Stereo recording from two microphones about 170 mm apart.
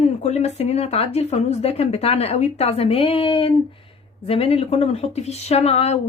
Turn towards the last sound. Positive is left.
turn(degrees=35)  # may be behind; listen again after turning